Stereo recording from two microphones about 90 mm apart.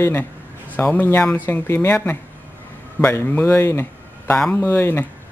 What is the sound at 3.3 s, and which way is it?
Speech, 20° left (ahead or behind).